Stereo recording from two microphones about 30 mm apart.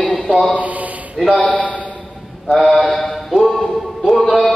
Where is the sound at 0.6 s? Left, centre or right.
Right.